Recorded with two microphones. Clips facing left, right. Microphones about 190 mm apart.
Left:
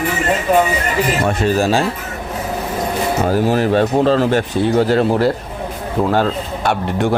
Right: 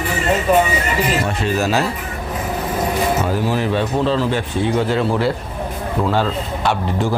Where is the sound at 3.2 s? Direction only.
45° left (ahead or behind).